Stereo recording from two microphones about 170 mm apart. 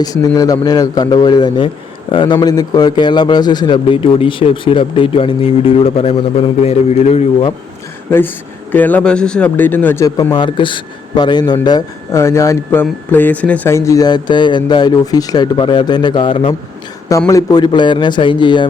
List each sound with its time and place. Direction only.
0.0 s a man's voice: 20° left (ahead or behind); by 7.5 s 40° left (ahead or behind)
8.7 s a man's voice: 10° left (ahead or behind)
10.3 s a man's voice: 30° left (ahead or behind)
17.1 s a man's voice: 20° left (ahead or behind)